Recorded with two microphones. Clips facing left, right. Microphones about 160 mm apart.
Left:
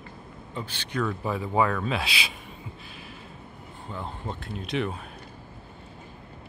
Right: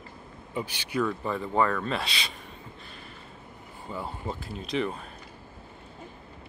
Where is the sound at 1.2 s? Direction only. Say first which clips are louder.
Left 1 dB; 5° left (ahead or behind).